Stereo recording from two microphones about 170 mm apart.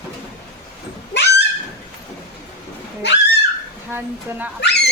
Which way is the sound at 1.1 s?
90° left.